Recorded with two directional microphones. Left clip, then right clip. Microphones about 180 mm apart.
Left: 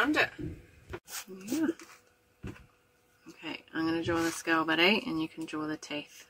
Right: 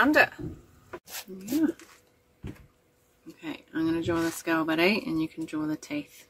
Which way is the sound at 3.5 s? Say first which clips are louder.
Right 3 dB; 55° right (ahead or behind).